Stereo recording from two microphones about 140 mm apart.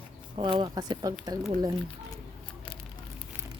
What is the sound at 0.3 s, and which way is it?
Speech, 35° right (ahead or behind).